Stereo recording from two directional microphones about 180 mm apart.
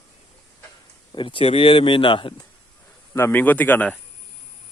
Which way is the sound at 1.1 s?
30° left (ahead or behind).